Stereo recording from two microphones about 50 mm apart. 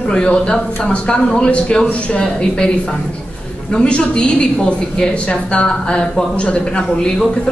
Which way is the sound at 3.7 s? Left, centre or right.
Centre.